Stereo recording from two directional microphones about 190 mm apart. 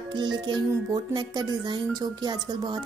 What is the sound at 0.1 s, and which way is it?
Speech, 25° right (ahead or behind).